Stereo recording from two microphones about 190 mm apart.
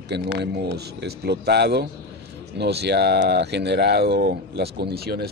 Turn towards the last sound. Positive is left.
turn(degrees=-55)  # may be behind; listen again after turning